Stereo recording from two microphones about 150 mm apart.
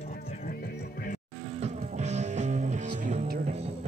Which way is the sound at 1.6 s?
50° right (ahead or behind).